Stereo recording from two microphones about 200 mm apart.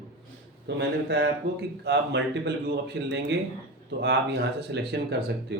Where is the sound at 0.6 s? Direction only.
60° right (ahead or behind).